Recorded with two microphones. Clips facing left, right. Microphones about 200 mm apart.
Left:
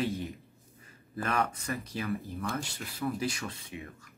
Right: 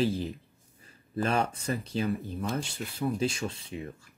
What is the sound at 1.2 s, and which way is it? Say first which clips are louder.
Speech: right 3 dB; 25° right (ahead or behind).